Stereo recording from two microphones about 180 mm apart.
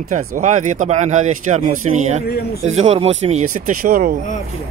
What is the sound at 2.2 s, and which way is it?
Speech, 60° left (ahead or behind).